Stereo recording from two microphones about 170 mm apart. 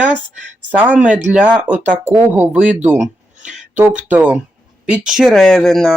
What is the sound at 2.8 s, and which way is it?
Speech, 45° right (ahead or behind).